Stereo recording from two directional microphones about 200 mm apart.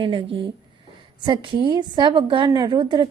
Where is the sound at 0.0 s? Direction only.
25° right (ahead or behind).